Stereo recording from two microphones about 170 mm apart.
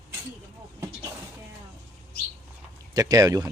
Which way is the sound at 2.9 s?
20° right (ahead or behind).